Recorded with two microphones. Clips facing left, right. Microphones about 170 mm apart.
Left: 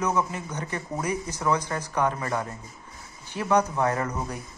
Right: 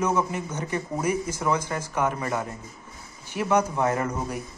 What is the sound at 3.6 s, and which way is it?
Speech, 10° right (ahead or behind).